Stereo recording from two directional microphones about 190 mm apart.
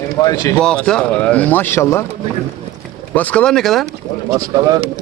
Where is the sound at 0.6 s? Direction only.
5° left (ahead or behind).